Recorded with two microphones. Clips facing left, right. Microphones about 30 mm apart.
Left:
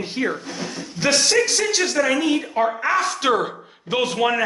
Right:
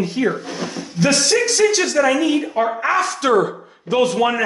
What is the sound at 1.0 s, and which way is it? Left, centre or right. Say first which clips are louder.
Speech: right 2 dB; centre.